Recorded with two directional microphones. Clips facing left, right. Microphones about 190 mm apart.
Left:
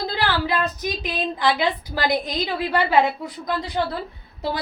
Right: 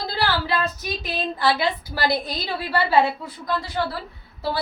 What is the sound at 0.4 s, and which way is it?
A woman's voice, 15° left (ahead or behind).